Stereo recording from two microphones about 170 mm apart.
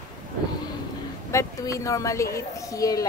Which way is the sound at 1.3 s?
20° left (ahead or behind).